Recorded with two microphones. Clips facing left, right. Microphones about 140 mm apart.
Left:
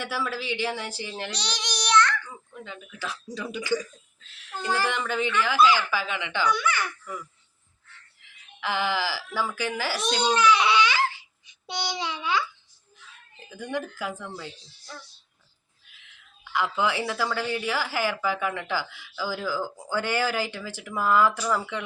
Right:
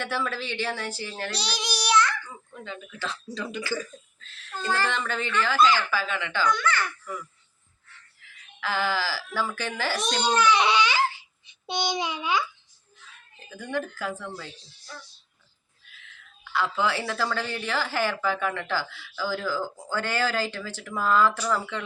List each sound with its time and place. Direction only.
0.0 s speech: 10° left (ahead or behind)
1.3 s child singing: 5° right (ahead or behind)
2.5 s speech: 5° left (ahead or behind)
8.2 s speech: 20° left (ahead or behind)
10.6 s babbling: 20° right (ahead or behind)
11.6 s a child's voice: 20° right (ahead or behind)
13.5 s speech: 15° left (ahead or behind)
15.9 s speech: 15° left (ahead or behind)